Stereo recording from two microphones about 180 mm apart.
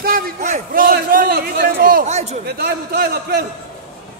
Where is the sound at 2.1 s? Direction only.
40° right (ahead or behind).